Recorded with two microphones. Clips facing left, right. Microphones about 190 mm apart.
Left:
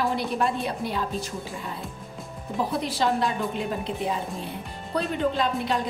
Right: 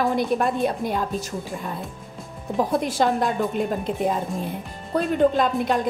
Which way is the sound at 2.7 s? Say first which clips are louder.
Right 3 dB; 50° right (ahead or behind).